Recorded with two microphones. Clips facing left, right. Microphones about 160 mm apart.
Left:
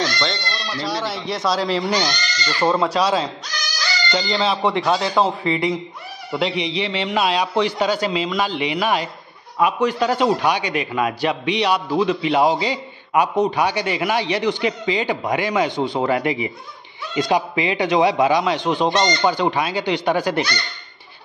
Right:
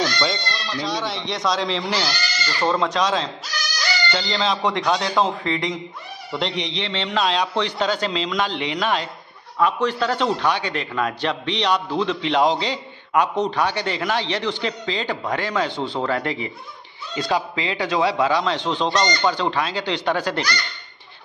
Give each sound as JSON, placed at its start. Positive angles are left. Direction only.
{"t": 0.0, "sound": "speech", "side_deg": -5}
{"t": 0.7, "sound": "speech", "side_deg": 5}
{"t": 1.9, "sound": "speech", "side_deg": -5}
{"t": 2.6, "sound": "a man's voice", "side_deg": 10}
{"t": 18.9, "sound": "speech", "side_deg": 25}
{"t": 19.3, "sound": "a man's voice", "side_deg": 15}